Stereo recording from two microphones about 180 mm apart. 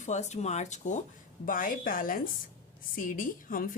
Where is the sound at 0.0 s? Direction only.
40° left (ahead or behind).